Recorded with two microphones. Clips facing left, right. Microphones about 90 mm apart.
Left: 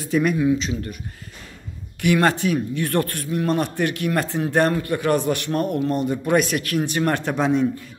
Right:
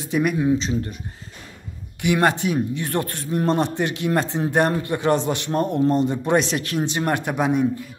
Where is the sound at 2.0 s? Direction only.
20° right (ahead or behind).